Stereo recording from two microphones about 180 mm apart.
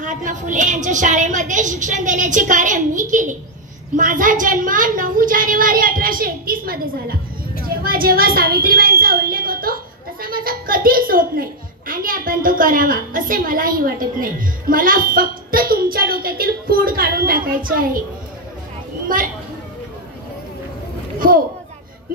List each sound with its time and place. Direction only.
0.0 s a woman's voice: 45° right (ahead or behind)
19.0 s a woman's voice: 50° right (ahead or behind)